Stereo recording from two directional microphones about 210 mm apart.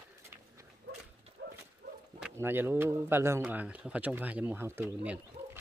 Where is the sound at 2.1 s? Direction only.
10° right (ahead or behind).